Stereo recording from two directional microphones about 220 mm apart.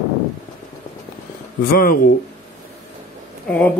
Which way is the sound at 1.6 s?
45° left (ahead or behind).